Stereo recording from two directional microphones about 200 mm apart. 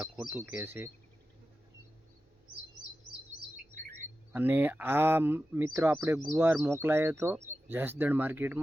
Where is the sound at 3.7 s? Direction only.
40° right (ahead or behind).